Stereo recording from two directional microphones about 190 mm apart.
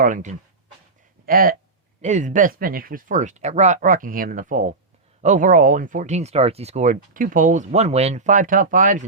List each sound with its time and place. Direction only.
0.0 s speech: 40° right (ahead or behind)